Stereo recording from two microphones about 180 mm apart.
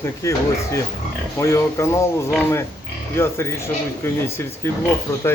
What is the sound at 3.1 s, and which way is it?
Speech, 15° left (ahead or behind).